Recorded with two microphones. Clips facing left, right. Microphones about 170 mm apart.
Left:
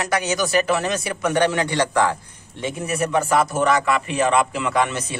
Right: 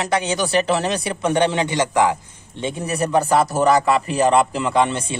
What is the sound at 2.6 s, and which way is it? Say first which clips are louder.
A man's voice: right 1 dB; 35° right (ahead or behind).